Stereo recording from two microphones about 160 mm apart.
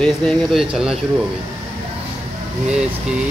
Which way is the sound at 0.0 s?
Centre (ahead or behind).